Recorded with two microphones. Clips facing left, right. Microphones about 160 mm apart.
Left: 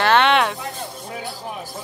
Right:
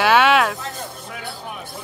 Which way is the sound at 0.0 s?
5° right (ahead or behind).